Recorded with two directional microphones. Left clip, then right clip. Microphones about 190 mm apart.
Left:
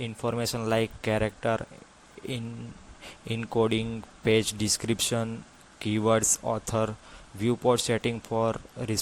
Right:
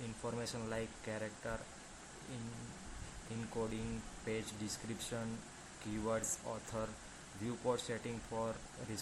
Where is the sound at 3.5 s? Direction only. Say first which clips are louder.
Left 17 dB; 35° left (ahead or behind).